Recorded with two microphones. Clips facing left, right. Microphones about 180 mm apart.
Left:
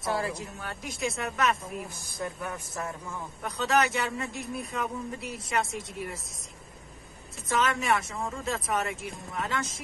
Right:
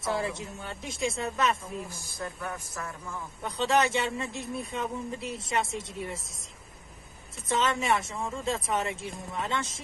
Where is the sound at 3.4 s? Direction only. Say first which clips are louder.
Right 1 dB; 25° right (ahead or behind).